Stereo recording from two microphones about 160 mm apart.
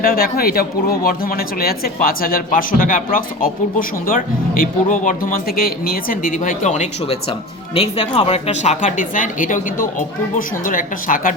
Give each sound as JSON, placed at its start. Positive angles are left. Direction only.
{"t": 0.0, "sound": "speech", "side_deg": 70}